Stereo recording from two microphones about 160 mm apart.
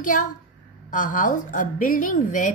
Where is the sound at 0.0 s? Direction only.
55° left (ahead or behind).